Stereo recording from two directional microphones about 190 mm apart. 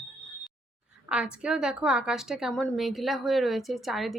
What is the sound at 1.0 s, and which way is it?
A woman's voice, 5° right (ahead or behind).